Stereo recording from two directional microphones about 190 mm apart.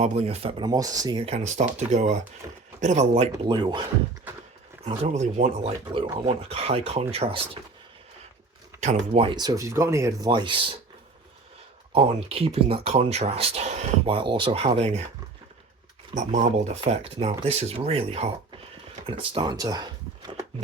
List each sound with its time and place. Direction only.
0.0 s speech: 35° right (ahead or behind)
2.4 s speech: 20° right (ahead or behind)
2.8 s speech: 35° right (ahead or behind)
3.6 s speech: 20° right (ahead or behind)
4.9 s speech: 35° right (ahead or behind)
8.8 s speech: 35° right (ahead or behind)
11.9 s speech: 30° right (ahead or behind)
16.1 s speech: 40° right (ahead or behind); by 20.3 s 20° right (ahead or behind)